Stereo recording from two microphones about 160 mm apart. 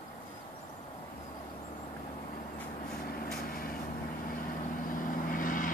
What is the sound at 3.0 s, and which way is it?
Vehicle, 65° left (ahead or behind).